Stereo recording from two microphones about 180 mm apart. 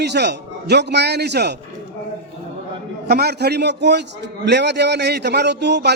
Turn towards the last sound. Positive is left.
turn(degrees=-70)  # may be behind; listen again after turning